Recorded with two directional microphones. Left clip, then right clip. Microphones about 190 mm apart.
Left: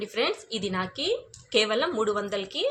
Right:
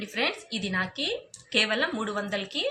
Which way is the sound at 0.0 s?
60° left (ahead or behind).